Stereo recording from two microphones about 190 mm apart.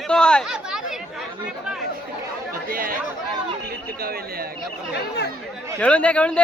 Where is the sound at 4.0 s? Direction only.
55° right (ahead or behind).